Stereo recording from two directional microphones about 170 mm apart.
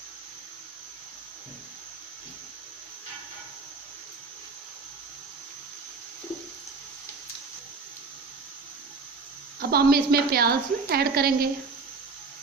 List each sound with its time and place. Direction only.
9.6 s a woman's voice: 65° right (ahead or behind)